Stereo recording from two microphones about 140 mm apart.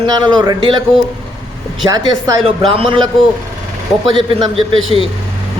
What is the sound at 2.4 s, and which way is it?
A man's voice, 40° right (ahead or behind).